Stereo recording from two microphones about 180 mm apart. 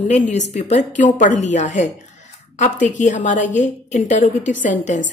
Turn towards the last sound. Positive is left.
turn(degrees=45)  # may be behind; listen again after turning